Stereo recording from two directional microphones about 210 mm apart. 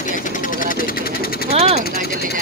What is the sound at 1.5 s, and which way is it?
Speech, 30° right (ahead or behind).